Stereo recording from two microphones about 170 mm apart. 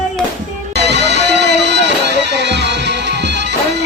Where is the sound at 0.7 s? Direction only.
80° right.